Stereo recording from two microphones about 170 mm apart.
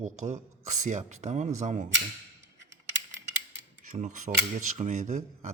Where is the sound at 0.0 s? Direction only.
45° right (ahead or behind).